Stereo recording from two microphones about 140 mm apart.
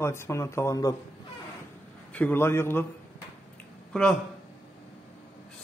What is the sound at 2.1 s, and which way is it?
Speech, 15° left (ahead or behind).